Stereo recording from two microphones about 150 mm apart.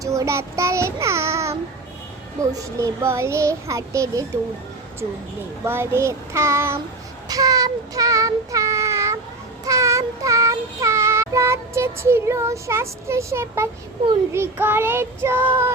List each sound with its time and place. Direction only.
0.0 s child singing: 20° right (ahead or behind)
2.5 s a child's voice: 20° right (ahead or behind)
5.6 s child singing: 15° right (ahead or behind)